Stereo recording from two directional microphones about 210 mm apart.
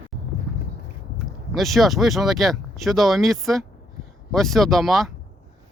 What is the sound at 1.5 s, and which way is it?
Speech, centre (ahead or behind).